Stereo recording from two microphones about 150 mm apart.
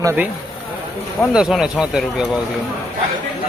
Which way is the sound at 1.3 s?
5° right (ahead or behind).